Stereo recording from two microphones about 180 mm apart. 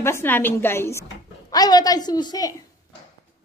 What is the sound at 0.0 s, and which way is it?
A woman's voice, 15° left (ahead or behind).